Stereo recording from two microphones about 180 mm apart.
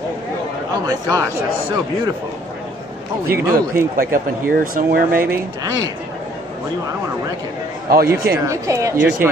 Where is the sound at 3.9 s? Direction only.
50° right (ahead or behind).